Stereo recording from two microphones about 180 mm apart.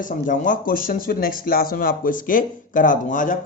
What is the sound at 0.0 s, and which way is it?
Speech, 45° left (ahead or behind).